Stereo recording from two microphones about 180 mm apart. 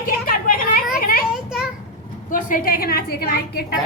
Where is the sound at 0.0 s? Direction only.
50° left (ahead or behind).